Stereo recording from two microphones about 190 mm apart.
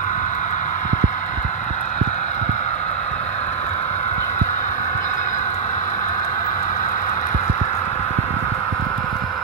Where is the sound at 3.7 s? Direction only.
35° left (ahead or behind).